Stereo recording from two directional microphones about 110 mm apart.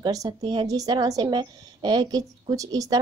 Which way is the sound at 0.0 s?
35° right (ahead or behind).